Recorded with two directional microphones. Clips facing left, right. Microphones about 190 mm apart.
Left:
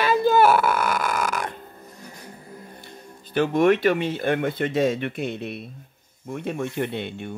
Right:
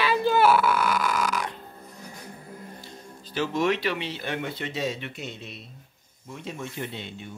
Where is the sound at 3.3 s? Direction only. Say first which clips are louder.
Left 7 dB; 55° left (ahead or behind).